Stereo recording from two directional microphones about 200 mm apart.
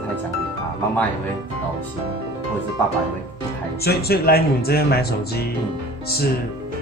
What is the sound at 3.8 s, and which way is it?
Speech, 50° left (ahead or behind).